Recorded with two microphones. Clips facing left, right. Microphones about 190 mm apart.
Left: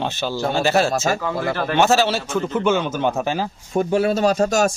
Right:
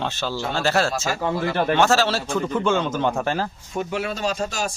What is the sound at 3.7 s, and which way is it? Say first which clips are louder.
A man's voice: left 11 dB; 35° left (ahead or behind).